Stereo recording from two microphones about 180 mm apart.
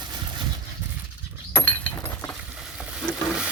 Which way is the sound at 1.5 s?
10° left (ahead or behind).